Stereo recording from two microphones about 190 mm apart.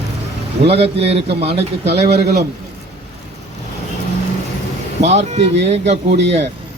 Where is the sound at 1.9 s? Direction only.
60° right (ahead or behind).